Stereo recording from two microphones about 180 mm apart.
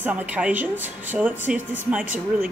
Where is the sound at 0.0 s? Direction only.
10° right (ahead or behind).